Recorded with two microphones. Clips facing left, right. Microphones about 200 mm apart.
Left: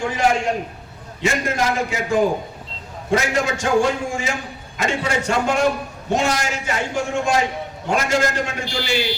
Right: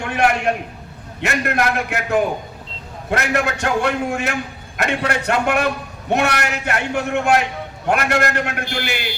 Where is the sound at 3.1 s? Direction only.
60° right (ahead or behind).